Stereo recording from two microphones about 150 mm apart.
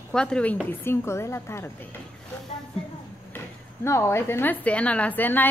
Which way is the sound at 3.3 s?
15° left (ahead or behind).